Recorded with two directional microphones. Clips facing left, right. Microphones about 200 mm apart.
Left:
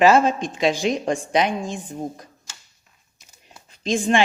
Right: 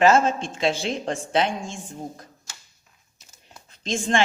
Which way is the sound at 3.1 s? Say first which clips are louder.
Even; 15° left (ahead or behind).